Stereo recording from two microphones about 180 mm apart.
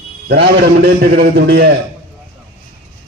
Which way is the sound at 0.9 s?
65° right (ahead or behind).